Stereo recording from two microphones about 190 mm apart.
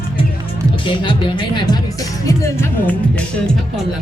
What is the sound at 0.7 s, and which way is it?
Speech, 25° left (ahead or behind).